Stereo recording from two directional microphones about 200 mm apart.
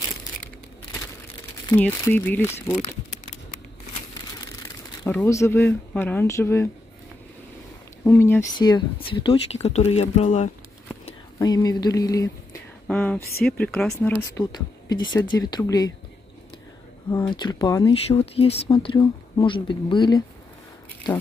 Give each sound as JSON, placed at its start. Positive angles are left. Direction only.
{"t": 1.7, "sound": "speech", "side_deg": 10}
{"t": 5.2, "sound": "speech", "side_deg": 15}
{"t": 8.0, "sound": "speech", "side_deg": 10}
{"t": 11.3, "sound": "speech", "side_deg": 20}
{"t": 12.8, "sound": "speech", "side_deg": 5}
{"t": 14.3, "sound": "speech", "side_deg": 20}
{"t": 17.1, "sound": "speech", "side_deg": 20}
{"t": 18.0, "sound": "speech", "side_deg": 30}